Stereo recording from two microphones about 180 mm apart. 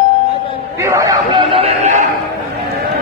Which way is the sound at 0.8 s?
20° right (ahead or behind).